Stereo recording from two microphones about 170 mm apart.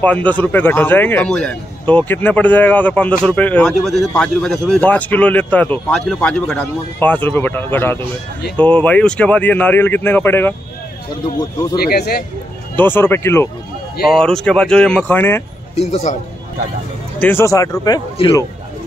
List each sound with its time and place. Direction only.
0.0 s a man's voice: 10° left (ahead or behind)
11.7 s speech: 65° left (ahead or behind)
12.7 s a man's voice: 10° left (ahead or behind)
14.1 s speech: 5° left (ahead or behind)
15.7 s a man's voice: 40° left (ahead or behind)
17.2 s speech: 15° left (ahead or behind)